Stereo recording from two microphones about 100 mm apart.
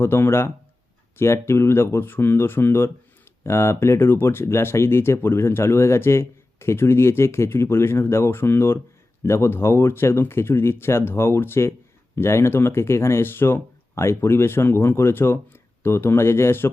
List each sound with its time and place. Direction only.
0.0 s speech: 25° left (ahead or behind)